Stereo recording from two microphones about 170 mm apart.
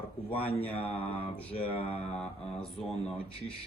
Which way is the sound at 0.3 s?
35° left (ahead or behind).